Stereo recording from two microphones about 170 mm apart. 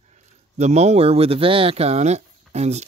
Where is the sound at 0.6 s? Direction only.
40° right (ahead or behind).